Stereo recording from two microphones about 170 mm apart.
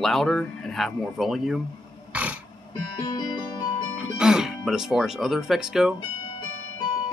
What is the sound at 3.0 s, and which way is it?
Music, 25° left (ahead or behind).